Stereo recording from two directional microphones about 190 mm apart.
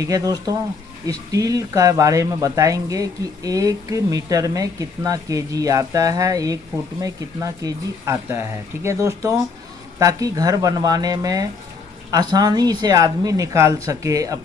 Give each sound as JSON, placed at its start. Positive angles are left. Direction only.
{"t": 0.0, "sound": "speech", "side_deg": -20}